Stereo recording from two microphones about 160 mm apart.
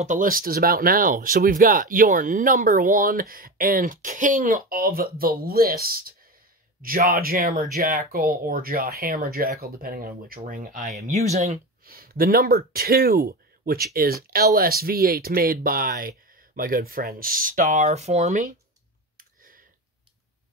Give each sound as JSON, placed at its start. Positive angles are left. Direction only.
{"t": 0.0, "sound": "speech", "side_deg": -55}
{"t": 11.8, "sound": "speech", "side_deg": -65}
{"t": 19.1, "sound": "clicking", "side_deg": -60}